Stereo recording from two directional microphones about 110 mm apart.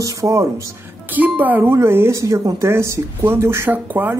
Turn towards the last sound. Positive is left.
turn(degrees=-20)  # may be behind; listen again after turning